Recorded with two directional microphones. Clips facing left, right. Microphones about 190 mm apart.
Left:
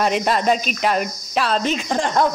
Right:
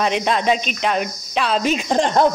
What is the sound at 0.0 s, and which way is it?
Speech, 5° left (ahead or behind).